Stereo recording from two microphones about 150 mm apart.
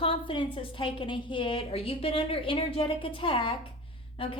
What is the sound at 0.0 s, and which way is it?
A woman's voice, 35° left (ahead or behind).